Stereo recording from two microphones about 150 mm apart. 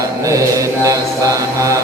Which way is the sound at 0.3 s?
20° right (ahead or behind).